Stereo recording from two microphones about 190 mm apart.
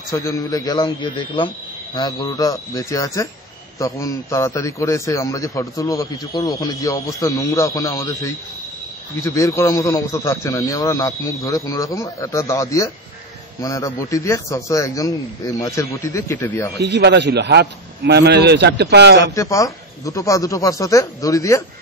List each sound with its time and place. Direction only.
0.1 s a man's voice: 15° left (ahead or behind)
16.7 s a man's voice: 60° right (ahead or behind)
19.3 s a man's voice: 15° left (ahead or behind)